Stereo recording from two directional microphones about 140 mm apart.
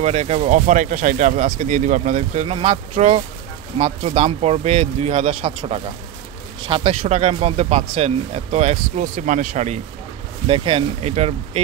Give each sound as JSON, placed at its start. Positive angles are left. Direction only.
{"t": 0.0, "sound": "speech", "side_deg": -55}
{"t": 9.0, "sound": "speech", "side_deg": -80}
{"t": 10.4, "sound": "speech", "side_deg": -40}